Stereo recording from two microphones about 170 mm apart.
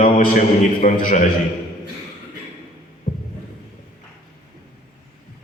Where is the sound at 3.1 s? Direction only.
50° left (ahead or behind).